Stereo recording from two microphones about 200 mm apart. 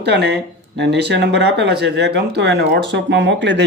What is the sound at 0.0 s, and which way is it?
Speech, 55° right (ahead or behind).